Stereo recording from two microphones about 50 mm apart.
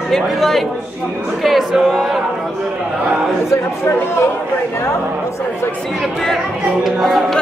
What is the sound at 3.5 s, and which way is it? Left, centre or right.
Speech, left.